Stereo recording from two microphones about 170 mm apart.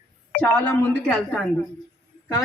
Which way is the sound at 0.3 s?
5° left (ahead or behind).